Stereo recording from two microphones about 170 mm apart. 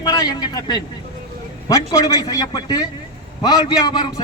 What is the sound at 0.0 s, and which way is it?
Speech, 20° left (ahead or behind).